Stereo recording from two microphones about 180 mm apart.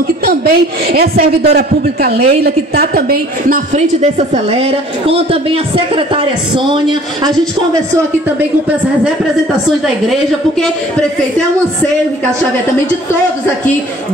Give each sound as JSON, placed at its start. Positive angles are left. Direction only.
{"t": 0.2, "sound": "a man's voice", "side_deg": -55}
{"t": 10.6, "sound": "a woman's voice", "side_deg": 5}